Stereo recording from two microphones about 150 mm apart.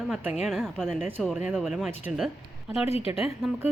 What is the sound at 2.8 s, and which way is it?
Speech, 40° left (ahead or behind).